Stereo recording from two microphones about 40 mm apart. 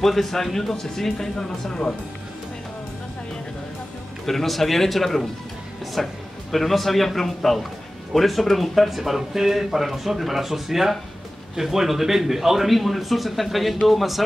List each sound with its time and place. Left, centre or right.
0.0 s speech: centre
1.7 s speech: centre
4.3 s speech: centre